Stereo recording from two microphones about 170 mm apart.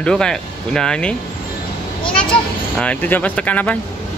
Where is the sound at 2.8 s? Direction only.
10° left (ahead or behind).